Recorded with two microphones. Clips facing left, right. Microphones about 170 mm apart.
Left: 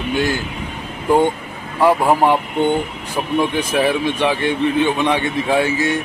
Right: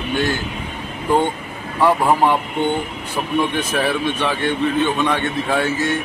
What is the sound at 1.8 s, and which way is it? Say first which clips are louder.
Speech: left 1 dB; 10° left (ahead or behind).